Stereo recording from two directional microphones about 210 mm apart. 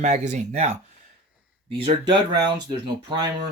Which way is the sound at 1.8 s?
25° right (ahead or behind).